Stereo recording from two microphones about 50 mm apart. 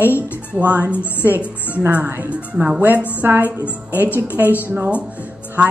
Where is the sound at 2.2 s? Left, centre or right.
Right.